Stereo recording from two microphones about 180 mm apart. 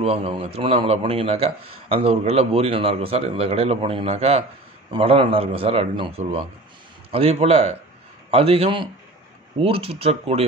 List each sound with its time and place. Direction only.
0.0 s speech: 35° right (ahead or behind)